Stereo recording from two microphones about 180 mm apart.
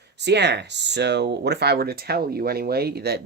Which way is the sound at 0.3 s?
70° right (ahead or behind).